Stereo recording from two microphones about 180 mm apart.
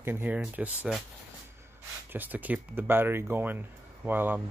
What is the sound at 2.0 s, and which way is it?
Speech, 10° right (ahead or behind).